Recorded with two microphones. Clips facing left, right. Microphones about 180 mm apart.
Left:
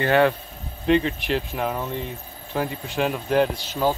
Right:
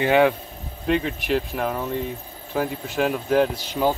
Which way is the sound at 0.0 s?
15° right (ahead or behind).